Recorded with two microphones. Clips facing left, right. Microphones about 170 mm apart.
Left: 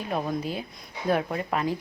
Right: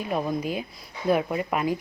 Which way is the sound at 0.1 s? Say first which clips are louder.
Right 2 dB; 10° right (ahead or behind).